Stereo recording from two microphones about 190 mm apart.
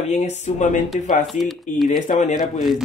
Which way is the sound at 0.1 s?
35° left (ahead or behind).